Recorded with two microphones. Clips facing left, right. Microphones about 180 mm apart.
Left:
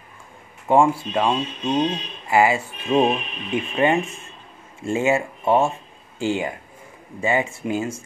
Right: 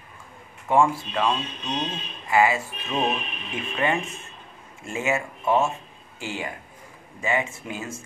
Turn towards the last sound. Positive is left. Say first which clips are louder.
# left 7 dB
turn(degrees=30)  # may be behind; listen again after turning